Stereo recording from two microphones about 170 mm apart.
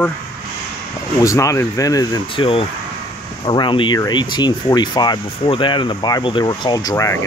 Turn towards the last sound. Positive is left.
turn(degrees=20)  # may be behind; listen again after turning